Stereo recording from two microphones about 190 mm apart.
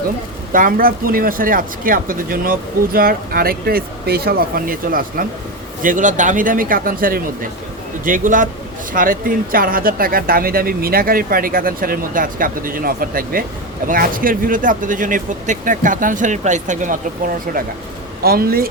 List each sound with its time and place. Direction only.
0.5 s speech: 50° right (ahead or behind)